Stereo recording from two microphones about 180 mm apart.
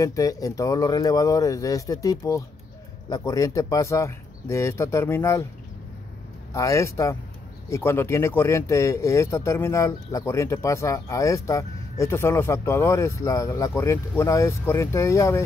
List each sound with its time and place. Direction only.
0.0 s speech: 20° left (ahead or behind)
6.5 s speech: 15° left (ahead or behind)